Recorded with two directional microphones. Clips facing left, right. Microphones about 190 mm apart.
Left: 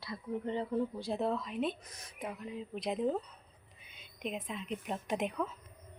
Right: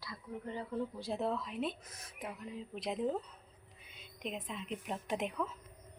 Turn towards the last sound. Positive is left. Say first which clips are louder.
# left 2 dB
turn(degrees=0)  # may be behind; listen again after turning